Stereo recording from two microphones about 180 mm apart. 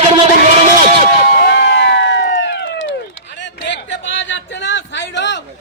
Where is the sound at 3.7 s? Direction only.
85° left.